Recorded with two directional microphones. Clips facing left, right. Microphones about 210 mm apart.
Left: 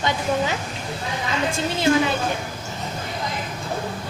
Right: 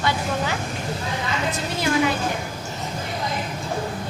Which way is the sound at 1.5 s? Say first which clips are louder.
Left 4 dB; 25° left (ahead or behind).